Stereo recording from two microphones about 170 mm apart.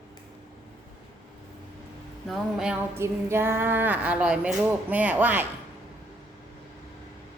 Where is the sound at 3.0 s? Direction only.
15° right (ahead or behind).